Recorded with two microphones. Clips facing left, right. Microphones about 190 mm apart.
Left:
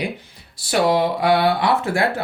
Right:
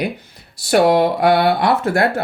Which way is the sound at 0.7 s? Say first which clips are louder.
Right 5 dB; 60° right (ahead or behind).